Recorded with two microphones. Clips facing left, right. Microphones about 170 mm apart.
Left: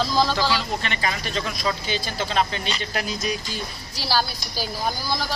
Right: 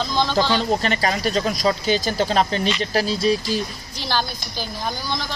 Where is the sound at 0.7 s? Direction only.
40° right (ahead or behind).